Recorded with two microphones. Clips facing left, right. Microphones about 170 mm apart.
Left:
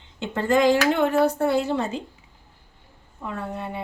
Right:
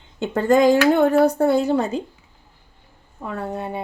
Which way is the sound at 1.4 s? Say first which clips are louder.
Right 4 dB; 40° right (ahead or behind).